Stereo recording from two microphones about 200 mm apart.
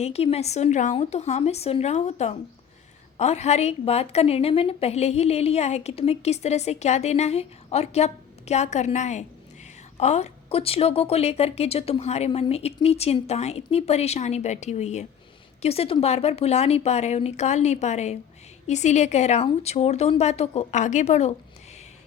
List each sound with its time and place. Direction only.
0.0 s a woman's voice: 30° left (ahead or behind)